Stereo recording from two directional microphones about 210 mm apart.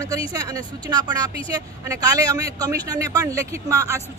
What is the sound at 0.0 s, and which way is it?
A man's voice, 15° right (ahead or behind).